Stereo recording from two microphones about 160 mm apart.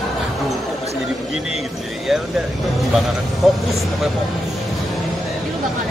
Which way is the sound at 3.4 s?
Centre (ahead or behind).